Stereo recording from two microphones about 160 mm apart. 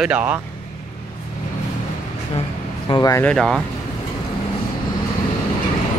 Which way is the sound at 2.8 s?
20° left (ahead or behind).